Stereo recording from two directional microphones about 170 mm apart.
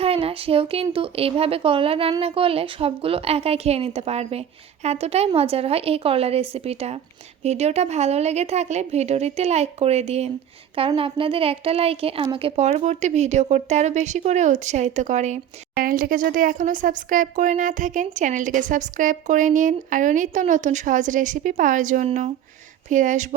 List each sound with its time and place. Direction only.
0.0 s a woman's voice: 35° right (ahead or behind)